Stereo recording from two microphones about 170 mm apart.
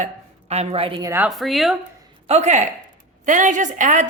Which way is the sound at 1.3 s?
Centre (ahead or behind).